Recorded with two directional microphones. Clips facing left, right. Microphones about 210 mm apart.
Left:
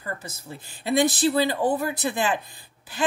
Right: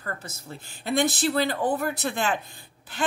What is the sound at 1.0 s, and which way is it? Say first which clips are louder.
A woman's voice: left 3 dB; 10° left (ahead or behind).